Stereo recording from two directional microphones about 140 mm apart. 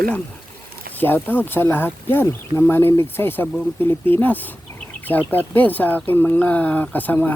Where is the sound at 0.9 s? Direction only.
15° left (ahead or behind).